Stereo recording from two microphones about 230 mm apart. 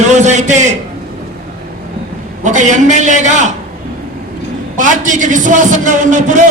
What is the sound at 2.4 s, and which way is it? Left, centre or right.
A man's voice, right.